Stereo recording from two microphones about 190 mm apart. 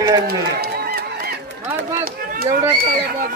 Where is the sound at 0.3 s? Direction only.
55° right (ahead or behind).